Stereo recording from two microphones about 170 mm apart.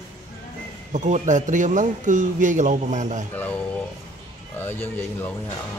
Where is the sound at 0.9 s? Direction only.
45° right (ahead or behind).